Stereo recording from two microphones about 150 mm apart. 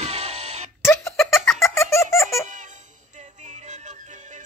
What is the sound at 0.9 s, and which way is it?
Giggle, 15° left (ahead or behind).